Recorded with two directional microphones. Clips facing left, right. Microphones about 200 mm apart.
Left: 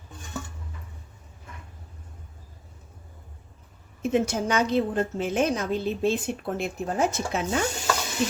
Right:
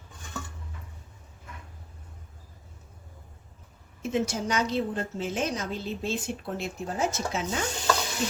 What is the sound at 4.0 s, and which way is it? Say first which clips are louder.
A woman's voice: left 4 dB; 55° left (ahead or behind).